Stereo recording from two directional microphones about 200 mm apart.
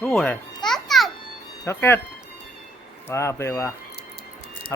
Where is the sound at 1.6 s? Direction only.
10° left (ahead or behind).